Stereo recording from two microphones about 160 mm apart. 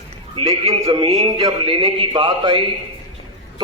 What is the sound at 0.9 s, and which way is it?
Speech, 25° right (ahead or behind).